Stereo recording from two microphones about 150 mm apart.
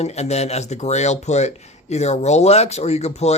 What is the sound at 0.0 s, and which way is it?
Speech, 45° left (ahead or behind).